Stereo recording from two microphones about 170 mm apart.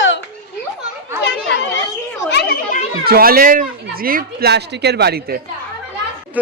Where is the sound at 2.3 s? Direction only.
75° left (ahead or behind).